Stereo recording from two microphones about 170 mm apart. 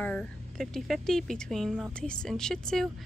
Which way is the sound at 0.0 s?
5° left (ahead or behind).